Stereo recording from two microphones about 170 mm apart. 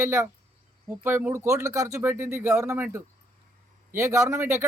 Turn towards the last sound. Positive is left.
turn(degrees=-15)  # may be behind; listen again after turning